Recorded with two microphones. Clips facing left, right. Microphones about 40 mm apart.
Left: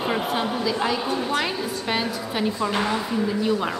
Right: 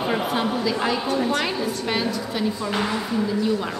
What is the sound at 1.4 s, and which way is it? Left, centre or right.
A woman's voice, centre.